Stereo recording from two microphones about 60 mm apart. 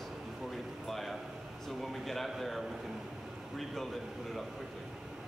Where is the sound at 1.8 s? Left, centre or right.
Centre.